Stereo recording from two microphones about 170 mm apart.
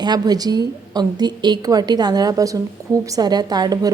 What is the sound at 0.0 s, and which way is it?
A woman's voice, 25° right (ahead or behind).